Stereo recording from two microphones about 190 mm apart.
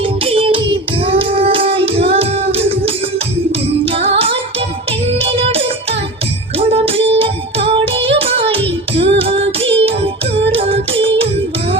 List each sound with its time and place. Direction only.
0.0 s music: 30° right (ahead or behind)
1.0 s child singing: 25° right (ahead or behind)
3.8 s music: 30° right (ahead or behind)